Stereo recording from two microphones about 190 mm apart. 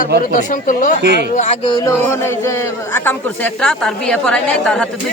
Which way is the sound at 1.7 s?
15° left (ahead or behind).